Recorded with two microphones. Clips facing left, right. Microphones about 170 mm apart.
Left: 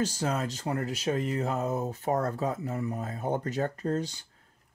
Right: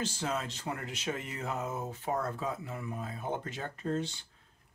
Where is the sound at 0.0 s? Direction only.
40° left (ahead or behind).